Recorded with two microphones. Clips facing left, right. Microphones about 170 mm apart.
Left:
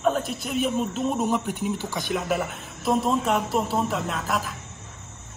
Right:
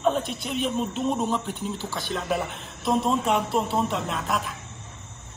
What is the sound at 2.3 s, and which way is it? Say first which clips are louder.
Speech: left 1 dB; 5° left (ahead or behind).